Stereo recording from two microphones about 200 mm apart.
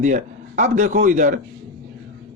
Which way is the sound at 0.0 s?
40° right (ahead or behind).